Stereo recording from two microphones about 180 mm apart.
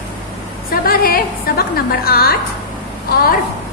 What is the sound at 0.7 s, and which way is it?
A woman's voice, 55° left (ahead or behind).